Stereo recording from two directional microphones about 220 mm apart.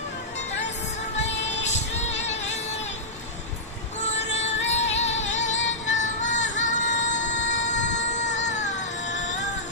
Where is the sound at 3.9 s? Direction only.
30° left (ahead or behind).